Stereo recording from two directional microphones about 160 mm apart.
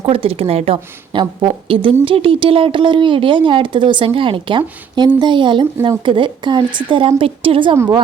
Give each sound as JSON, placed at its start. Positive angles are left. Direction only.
{"t": 0.0, "sound": "speech", "side_deg": -35}
{"t": 7.8, "sound": "speech", "side_deg": -20}